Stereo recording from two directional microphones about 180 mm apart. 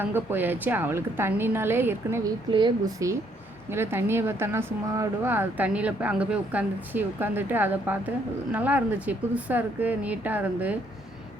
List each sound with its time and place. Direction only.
0.0 s speech: 10° right (ahead or behind)
2.5 s speech: 25° right (ahead or behind); by 10.8 s 10° right (ahead or behind)